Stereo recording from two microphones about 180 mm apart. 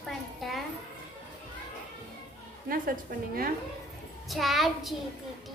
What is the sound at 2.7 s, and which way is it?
Speech, 55° right (ahead or behind).